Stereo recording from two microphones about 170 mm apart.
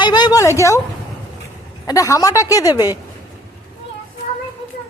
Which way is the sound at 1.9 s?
20° left (ahead or behind).